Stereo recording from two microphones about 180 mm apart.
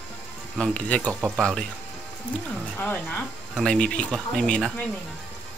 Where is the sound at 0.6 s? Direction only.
5° left (ahead or behind).